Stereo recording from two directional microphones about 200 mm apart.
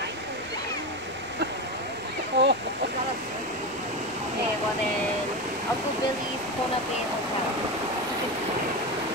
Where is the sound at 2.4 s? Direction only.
60° right (ahead or behind).